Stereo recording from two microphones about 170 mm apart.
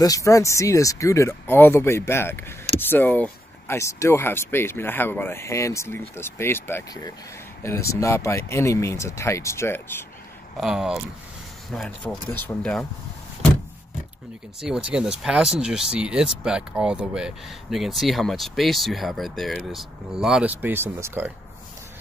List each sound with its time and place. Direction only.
0.0 s speech: 20° left (ahead or behind)
10.6 s speech: 5° right (ahead or behind)
14.6 s speech: 5° right (ahead or behind)